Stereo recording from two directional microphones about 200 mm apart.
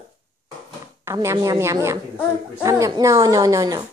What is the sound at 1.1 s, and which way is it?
Speech, 15° right (ahead or behind).